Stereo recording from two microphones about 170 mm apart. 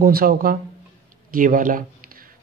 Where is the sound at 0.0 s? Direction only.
55° right (ahead or behind).